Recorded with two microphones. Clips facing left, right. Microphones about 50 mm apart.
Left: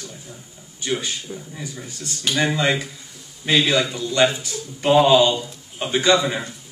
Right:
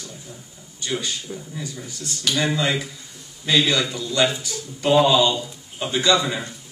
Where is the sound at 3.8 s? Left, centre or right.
Centre.